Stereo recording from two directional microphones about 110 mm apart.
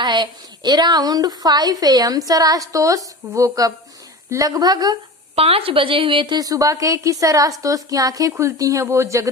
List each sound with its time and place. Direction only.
0.0 s a woman's voice: 45° right (ahead or behind)
5.3 s a woman's voice: 60° right (ahead or behind); by 9.3 s 30° right (ahead or behind)